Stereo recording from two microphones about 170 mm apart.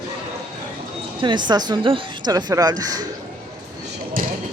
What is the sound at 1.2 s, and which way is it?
A woman's voice, 25° right (ahead or behind).